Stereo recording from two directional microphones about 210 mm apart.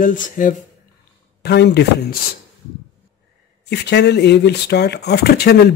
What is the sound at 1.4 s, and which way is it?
Speech, 50° left (ahead or behind).